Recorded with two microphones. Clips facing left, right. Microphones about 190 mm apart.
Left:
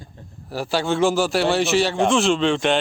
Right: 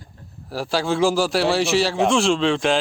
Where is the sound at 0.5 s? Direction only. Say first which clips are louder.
Even; centre (ahead or behind).